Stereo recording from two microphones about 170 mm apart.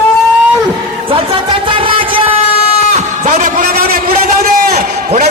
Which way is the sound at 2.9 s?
45° right (ahead or behind).